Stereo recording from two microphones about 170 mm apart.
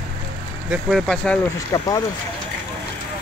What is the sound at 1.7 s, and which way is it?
Speech, 25° left (ahead or behind).